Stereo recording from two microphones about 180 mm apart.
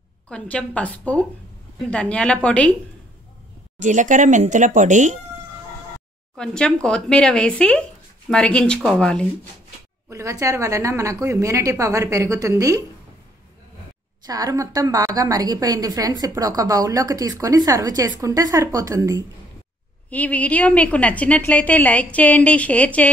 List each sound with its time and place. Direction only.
0.3 s a woman's voice: 5° left (ahead or behind)
3.8 s speech: 45° right (ahead or behind)
6.3 s speech: 5° left (ahead or behind)
10.0 s a woman's voice: 15° right (ahead or behind)
14.2 s a woman's voice: 20° right (ahead or behind)
20.1 s a woman's voice: 10° left (ahead or behind)